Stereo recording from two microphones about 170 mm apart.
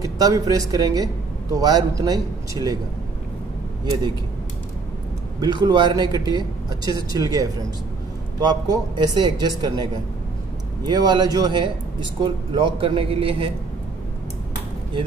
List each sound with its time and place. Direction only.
0.0 s speech: 20° right (ahead or behind)
5.4 s a man's voice: 25° right (ahead or behind)